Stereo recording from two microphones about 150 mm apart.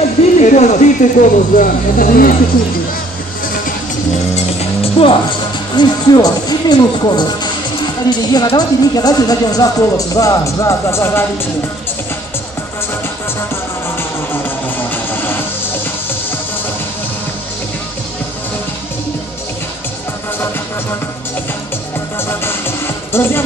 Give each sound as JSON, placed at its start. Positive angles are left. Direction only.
{"t": 0.4, "sound": "speech", "side_deg": 50}
{"t": 4.6, "sound": "music", "side_deg": 40}
{"t": 5.8, "sound": "speech", "side_deg": 30}
{"t": 15.0, "sound": "music", "side_deg": 15}
{"t": 22.3, "sound": "music", "side_deg": 15}